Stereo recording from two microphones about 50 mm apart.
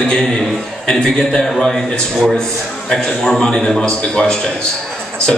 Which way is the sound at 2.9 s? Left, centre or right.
Centre.